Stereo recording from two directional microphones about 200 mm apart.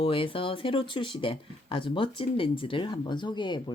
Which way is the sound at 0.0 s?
25° left (ahead or behind).